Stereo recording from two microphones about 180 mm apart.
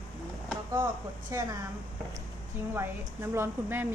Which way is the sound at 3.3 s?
10° right (ahead or behind).